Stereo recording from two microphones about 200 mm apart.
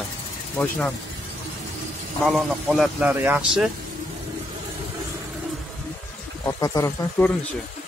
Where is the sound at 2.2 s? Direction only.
Centre (ahead or behind).